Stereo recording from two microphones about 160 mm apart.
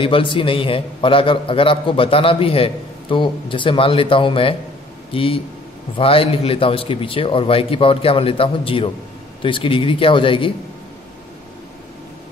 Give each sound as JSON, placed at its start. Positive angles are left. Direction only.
{"t": 0.0, "sound": "a man's voice", "side_deg": 35}